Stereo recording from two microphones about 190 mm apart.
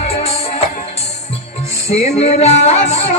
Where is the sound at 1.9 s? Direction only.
35° left (ahead or behind).